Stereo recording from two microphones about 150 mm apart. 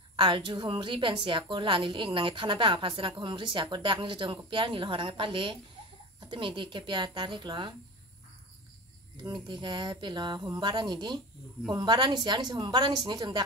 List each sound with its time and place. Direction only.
0.1 s a woman's voice: 30° right (ahead or behind)
9.1 s a woman's voice: 30° right (ahead or behind)